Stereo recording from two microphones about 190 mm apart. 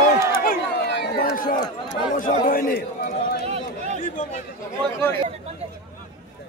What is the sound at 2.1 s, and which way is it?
Speech, 45° left (ahead or behind).